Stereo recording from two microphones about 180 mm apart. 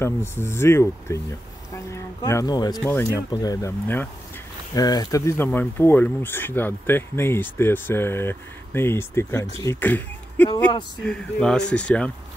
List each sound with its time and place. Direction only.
0.0 s speech: 15° left (ahead or behind)